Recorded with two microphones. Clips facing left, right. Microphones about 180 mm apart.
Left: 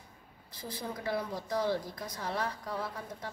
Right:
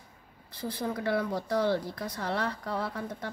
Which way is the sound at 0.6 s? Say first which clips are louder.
Right 7 dB; 65° right (ahead or behind).